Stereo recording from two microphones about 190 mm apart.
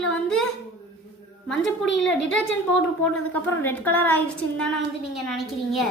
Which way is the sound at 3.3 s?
10° left (ahead or behind).